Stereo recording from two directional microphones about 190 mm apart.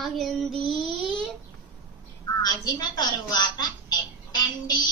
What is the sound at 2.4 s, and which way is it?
A woman's voice, 20° left (ahead or behind).